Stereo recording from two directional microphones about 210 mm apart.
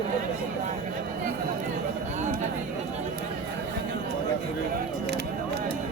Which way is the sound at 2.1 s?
35° right (ahead or behind).